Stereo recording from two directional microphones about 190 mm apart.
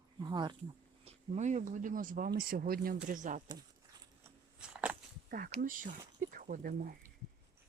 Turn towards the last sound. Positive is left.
turn(degrees=-45)  # may be behind; listen again after turning